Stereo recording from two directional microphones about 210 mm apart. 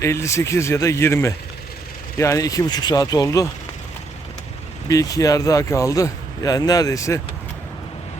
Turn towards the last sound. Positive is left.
turn(degrees=15)  # may be behind; listen again after turning